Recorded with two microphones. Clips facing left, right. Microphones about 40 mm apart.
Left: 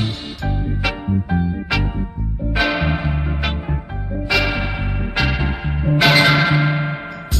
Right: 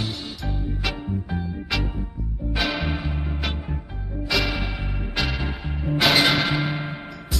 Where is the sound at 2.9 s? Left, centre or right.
Left.